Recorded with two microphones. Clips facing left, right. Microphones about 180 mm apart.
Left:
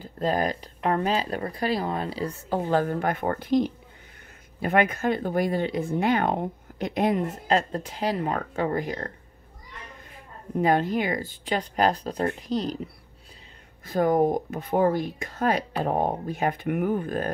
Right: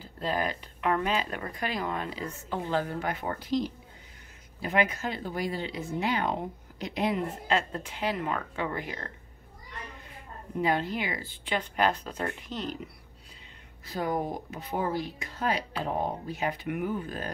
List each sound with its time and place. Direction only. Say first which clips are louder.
0.2 s speech: left 5 dB; 40° left (ahead or behind)
10.6 s speech: left 6 dB; 45° left (ahead or behind)
13.8 s speech: left 9 dB; 50° left (ahead or behind)